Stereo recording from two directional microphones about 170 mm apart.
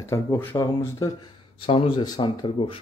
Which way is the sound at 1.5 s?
30° left (ahead or behind).